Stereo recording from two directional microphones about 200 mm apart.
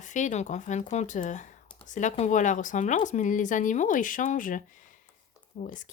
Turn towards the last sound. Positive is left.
turn(degrees=40)  # may be behind; listen again after turning